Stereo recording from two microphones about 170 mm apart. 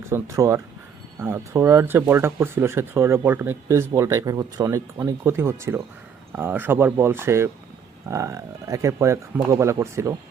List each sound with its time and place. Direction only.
0.1 s speech: 15° right (ahead or behind)